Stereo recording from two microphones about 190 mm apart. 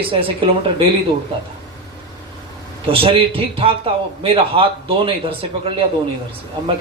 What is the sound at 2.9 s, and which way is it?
A man's voice, 30° right (ahead or behind).